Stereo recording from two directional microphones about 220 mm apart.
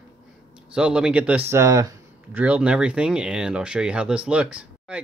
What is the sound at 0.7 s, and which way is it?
Speech, 5° right (ahead or behind).